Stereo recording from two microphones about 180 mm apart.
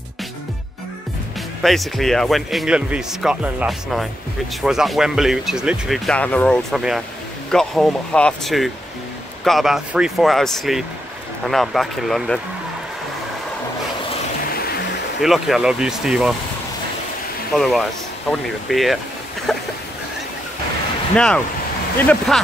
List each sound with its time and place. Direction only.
1.6 s speech: centre (ahead or behind)
14.5 s music: 55° left (ahead or behind)
15.2 s speech: centre (ahead or behind)
17.6 s speech: centre (ahead or behind)
19.5 s a sound: centre (ahead or behind)
21.9 s speech: 5° left (ahead or behind)